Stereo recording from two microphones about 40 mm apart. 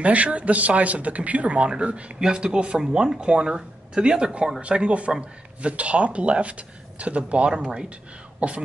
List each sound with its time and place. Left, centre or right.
0.0 s speech: right
2.1 s speech: centre